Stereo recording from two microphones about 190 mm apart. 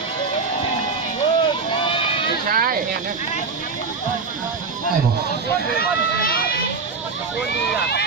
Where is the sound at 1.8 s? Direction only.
25° left (ahead or behind).